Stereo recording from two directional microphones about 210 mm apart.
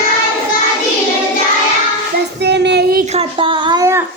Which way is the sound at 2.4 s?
55° right (ahead or behind).